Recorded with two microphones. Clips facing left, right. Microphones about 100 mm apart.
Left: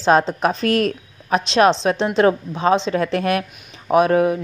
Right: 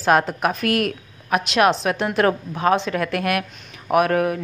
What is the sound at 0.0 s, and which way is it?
A woman's voice, 25° left (ahead or behind).